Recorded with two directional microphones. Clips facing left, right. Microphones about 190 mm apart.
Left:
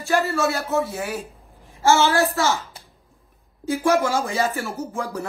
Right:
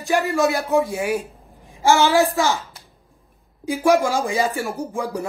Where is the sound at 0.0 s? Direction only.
15° right (ahead or behind).